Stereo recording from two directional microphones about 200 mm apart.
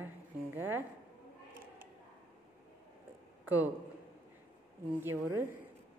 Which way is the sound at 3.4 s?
10° right (ahead or behind).